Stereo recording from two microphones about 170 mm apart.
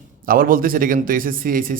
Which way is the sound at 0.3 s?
55° right (ahead or behind).